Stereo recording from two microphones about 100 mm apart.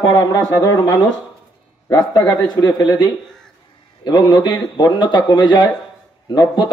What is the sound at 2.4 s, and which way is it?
Speech, 45° left (ahead or behind).